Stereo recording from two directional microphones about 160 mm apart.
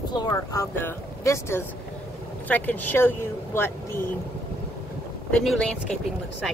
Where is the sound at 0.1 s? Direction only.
25° left (ahead or behind).